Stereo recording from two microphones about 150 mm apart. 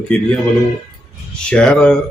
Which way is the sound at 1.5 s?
10° left (ahead or behind).